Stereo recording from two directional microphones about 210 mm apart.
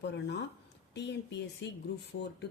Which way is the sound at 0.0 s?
55° left (ahead or behind).